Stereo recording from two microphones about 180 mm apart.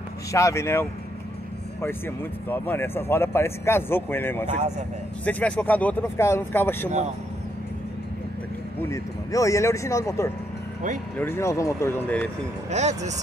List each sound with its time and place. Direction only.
0.3 s speech: 15° left (ahead or behind)
2.5 s speech: 10° left (ahead or behind)
4.5 s speech: 40° right (ahead or behind)
5.2 s speech: 10° left (ahead or behind)
8.7 s speech: 15° left (ahead or behind)
12.7 s speech: 40° right (ahead or behind)